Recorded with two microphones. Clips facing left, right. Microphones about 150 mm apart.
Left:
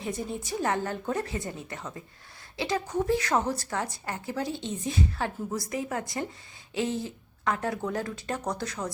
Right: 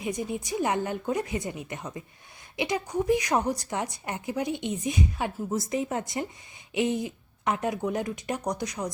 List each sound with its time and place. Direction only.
0.0 s a woman's voice: 15° right (ahead or behind)